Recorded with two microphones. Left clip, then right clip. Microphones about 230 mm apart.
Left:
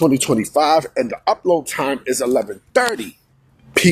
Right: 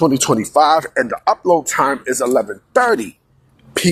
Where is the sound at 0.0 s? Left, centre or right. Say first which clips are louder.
Right 1 dB; centre.